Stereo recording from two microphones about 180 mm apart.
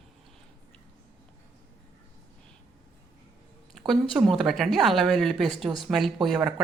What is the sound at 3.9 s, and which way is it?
Speech, centre (ahead or behind).